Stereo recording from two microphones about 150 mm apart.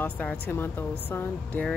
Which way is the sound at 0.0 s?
10° left (ahead or behind).